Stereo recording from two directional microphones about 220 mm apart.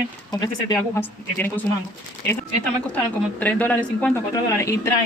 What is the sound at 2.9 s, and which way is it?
Speech, 5° left (ahead or behind).